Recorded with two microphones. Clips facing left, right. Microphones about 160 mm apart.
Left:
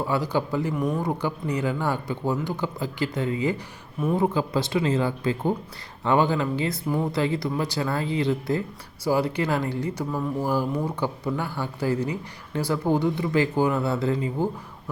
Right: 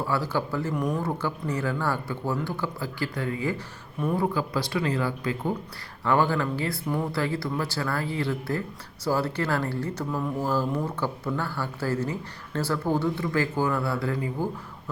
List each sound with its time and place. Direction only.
0.0 s speech: 15° left (ahead or behind)
0.7 s speech: centre (ahead or behind)
0.9 s speech: 15° left (ahead or behind)